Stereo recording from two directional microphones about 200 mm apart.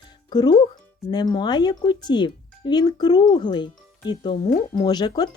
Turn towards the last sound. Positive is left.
turn(degrees=20)  # may be behind; listen again after turning